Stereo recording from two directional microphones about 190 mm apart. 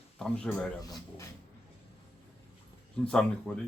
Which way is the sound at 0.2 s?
5° left (ahead or behind).